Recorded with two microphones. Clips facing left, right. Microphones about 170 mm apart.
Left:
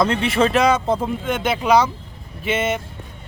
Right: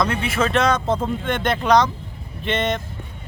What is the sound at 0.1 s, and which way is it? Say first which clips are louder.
Speech: left 4 dB; 30° left (ahead or behind).